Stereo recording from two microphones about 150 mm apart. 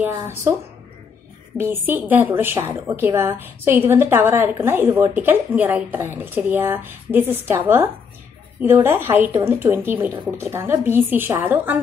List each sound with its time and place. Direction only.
0.2 s a woman's voice: 15° right (ahead or behind)
1.6 s a woman's voice: 15° right (ahead or behind)